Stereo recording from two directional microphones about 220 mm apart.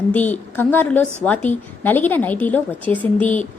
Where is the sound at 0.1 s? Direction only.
5° left (ahead or behind).